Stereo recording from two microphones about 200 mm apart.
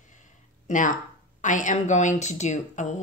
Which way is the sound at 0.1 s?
40° left (ahead or behind).